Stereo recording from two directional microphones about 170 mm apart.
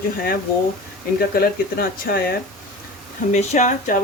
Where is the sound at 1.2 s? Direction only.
60° left (ahead or behind).